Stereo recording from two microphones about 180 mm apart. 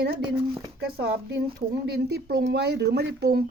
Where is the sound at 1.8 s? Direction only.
60° right (ahead or behind).